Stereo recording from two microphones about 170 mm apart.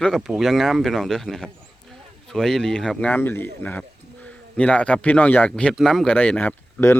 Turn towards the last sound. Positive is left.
turn(degrees=10)  # may be behind; listen again after turning